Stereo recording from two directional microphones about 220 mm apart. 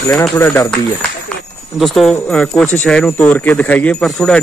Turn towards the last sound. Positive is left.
turn(degrees=0)  # may be behind; listen again after turning